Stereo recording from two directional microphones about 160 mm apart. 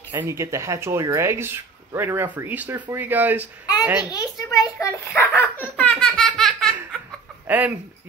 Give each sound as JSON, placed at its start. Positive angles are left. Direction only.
{"t": 0.1, "sound": "speech", "side_deg": -15}
{"t": 4.1, "sound": "a child's voice", "side_deg": 25}
{"t": 5.1, "sound": "a child's voice", "side_deg": 10}
{"t": 5.8, "sound": "laughter", "side_deg": 5}
{"t": 7.4, "sound": "speech", "side_deg": -10}